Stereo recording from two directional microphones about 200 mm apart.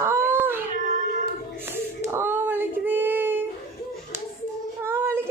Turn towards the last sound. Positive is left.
turn(degrees=-10)  # may be behind; listen again after turning